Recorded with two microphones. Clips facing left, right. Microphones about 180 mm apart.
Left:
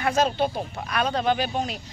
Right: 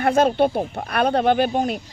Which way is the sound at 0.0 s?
55° right (ahead or behind).